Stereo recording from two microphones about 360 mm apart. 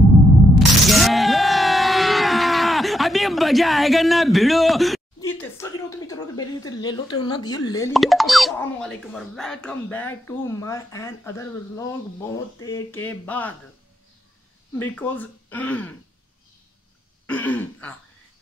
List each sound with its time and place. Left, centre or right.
0.6 s speech: centre
14.8 s speech: centre
17.3 s speech: centre